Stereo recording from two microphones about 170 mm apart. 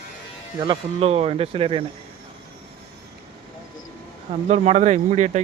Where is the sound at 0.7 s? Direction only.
35° right (ahead or behind).